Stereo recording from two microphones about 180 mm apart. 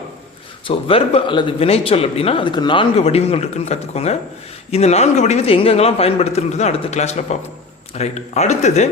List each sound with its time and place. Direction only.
0.7 s a man's voice: 30° left (ahead or behind)